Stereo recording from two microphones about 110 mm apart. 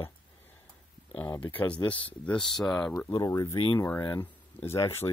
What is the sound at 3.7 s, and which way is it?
Speech, 20° left (ahead or behind).